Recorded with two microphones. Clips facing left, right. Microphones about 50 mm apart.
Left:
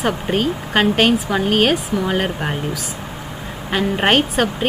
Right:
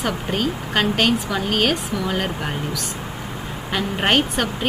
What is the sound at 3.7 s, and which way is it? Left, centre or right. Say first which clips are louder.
Speech: left 4 dB; centre.